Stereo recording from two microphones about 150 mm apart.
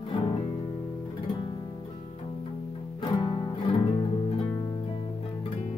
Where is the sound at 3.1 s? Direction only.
30° left (ahead or behind).